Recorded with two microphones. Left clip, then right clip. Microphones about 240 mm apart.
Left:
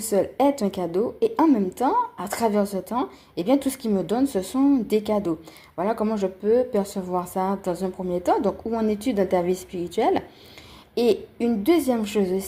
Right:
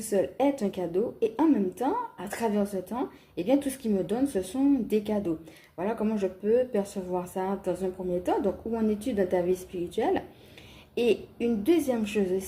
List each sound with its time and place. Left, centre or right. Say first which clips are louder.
0.1 s a woman's voice: left 5 dB; left